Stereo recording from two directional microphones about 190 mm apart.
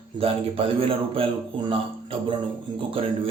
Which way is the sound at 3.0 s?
30° right (ahead or behind).